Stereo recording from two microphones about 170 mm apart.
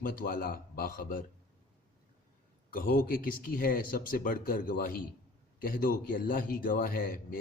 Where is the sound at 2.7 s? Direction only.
55° left (ahead or behind).